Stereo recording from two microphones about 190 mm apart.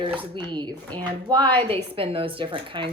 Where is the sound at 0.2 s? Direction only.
25° right (ahead or behind).